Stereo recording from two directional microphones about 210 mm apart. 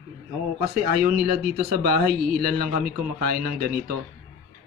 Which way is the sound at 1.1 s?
45° right (ahead or behind).